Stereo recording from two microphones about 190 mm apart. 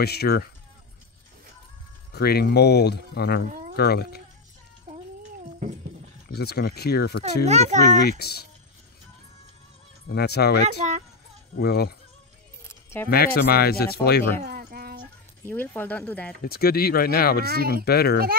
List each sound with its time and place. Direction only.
0.0 s speech: 55° left (ahead or behind)
2.1 s speech: 55° left (ahead or behind)
6.3 s speech: 60° left (ahead or behind)
7.4 s a child's voice: 35° right (ahead or behind)
8.1 s speech: 55° left (ahead or behind)
10.0 s speech: 60° left (ahead or behind)
12.6 s keys jangling: 15° left (ahead or behind)
13.1 s speech: 55° left (ahead or behind)
14.4 s a sound: 55° right (ahead or behind)
15.4 s speech: 10° left (ahead or behind)
16.4 s speech: 55° left (ahead or behind)
17.5 s speech: 50° right (ahead or behind)
17.8 s speech: 55° left (ahead or behind)